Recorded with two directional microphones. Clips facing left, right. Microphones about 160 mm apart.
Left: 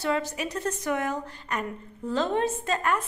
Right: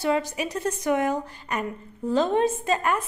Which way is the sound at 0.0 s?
15° right (ahead or behind).